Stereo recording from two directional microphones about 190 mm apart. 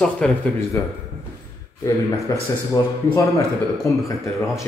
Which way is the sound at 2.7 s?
15° left (ahead or behind).